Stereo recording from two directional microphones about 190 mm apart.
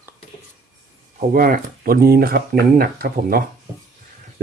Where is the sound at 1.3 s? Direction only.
50° right (ahead or behind).